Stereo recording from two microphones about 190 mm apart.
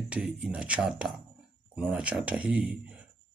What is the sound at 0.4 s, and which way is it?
Speech, 5° right (ahead or behind).